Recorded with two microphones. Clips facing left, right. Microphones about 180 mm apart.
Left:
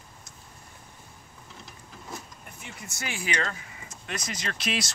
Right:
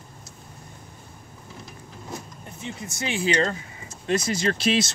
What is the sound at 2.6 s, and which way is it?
Speech, 20° right (ahead or behind).